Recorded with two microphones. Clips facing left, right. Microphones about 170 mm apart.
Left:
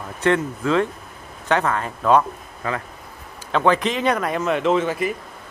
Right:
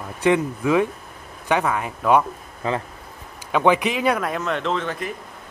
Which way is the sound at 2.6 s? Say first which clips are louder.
Right 2 dB; 25° right (ahead or behind).